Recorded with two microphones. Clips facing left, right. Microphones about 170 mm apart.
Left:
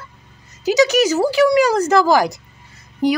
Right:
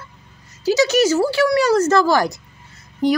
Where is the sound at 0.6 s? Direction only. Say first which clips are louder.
Left 1 dB; 15° left (ahead or behind).